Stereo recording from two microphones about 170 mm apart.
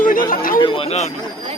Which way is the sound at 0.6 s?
30° left (ahead or behind).